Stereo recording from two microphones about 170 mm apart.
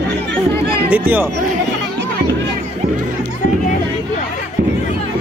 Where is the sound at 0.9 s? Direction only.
10° right (ahead or behind).